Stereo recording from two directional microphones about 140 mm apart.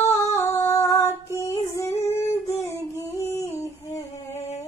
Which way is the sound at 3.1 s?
15° left (ahead or behind).